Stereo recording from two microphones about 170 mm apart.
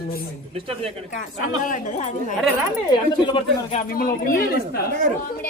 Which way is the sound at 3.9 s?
60° left (ahead or behind).